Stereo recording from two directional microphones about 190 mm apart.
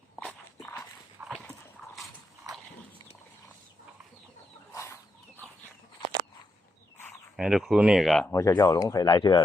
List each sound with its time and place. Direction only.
0.2 s dog: 10° left (ahead or behind)
1.2 s clip-clop: 10° right (ahead or behind)
4.7 s chicken: 15° left (ahead or behind)
7.3 s speech: 5° right (ahead or behind)
8.3 s speech: 15° left (ahead or behind)